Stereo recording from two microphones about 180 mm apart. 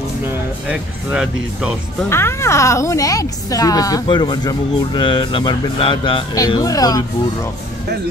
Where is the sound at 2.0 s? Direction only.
15° left (ahead or behind).